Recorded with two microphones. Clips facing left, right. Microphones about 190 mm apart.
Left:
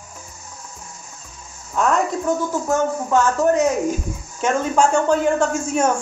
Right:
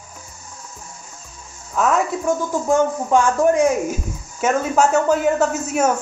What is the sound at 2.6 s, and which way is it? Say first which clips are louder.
Speech: right 4 dB; 15° right (ahead or behind).